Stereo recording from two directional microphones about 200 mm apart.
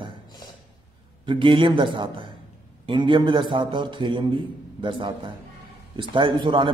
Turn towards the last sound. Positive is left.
turn(degrees=-25)  # may be behind; listen again after turning